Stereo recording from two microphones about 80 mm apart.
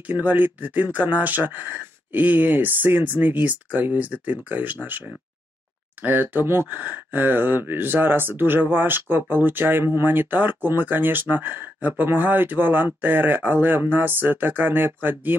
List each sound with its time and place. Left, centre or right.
0.0 s speech: right